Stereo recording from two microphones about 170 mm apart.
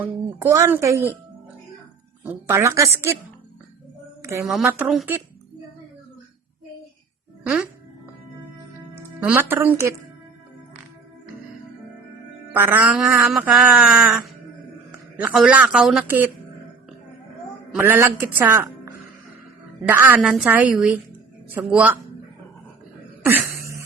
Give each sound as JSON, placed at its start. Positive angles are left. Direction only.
{"t": 0.3, "sound": "speech", "side_deg": -15}
{"t": 2.2, "sound": "speech", "side_deg": -15}
{"t": 4.2, "sound": "a sound", "side_deg": -15}
{"t": 4.6, "sound": "speech", "side_deg": -10}
{"t": 7.4, "sound": "speech", "side_deg": -5}
{"t": 9.0, "sound": "speech", "side_deg": -10}
{"t": 12.5, "sound": "speech", "side_deg": -10}
{"t": 15.2, "sound": "speech", "side_deg": -5}
{"t": 17.7, "sound": "speech", "side_deg": -15}
{"t": 19.9, "sound": "speech", "side_deg": -10}
{"t": 23.2, "sound": "throat clearing", "side_deg": -10}